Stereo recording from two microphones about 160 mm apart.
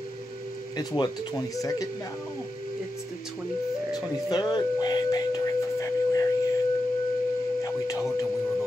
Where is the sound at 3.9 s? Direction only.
25° left (ahead or behind).